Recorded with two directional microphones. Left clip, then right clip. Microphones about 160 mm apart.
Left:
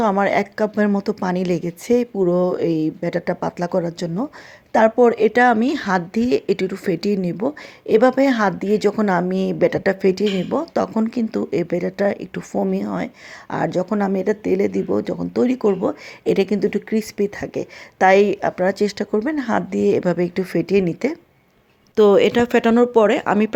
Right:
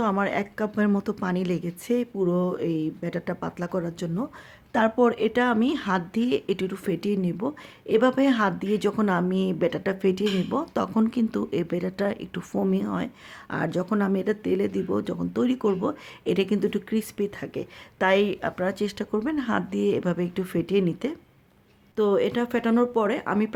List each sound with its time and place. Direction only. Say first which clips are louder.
0.0 s a woman's voice: left 8 dB; 20° left (ahead or behind)
21.9 s speech: left 10 dB; 35° left (ahead or behind)